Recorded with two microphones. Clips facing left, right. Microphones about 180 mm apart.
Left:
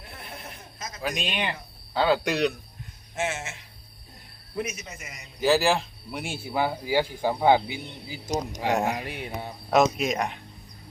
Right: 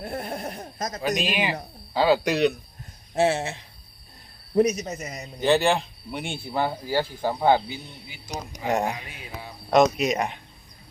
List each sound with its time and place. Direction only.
0.0 s a sound: 45° right (ahead or behind)
1.0 s speech: centre (ahead or behind)
3.2 s a man's voice: 35° right (ahead or behind)
5.4 s speech: centre (ahead or behind)
8.6 s speech: centre (ahead or behind)
8.9 s speech: 65° left (ahead or behind)
9.6 s speech: centre (ahead or behind)